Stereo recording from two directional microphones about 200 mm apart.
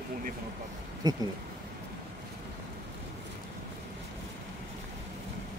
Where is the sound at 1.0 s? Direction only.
20° right (ahead or behind).